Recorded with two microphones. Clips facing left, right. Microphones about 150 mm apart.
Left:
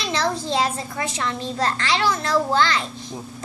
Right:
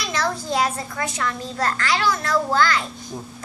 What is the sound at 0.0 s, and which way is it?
A child's voice, 25° left (ahead or behind).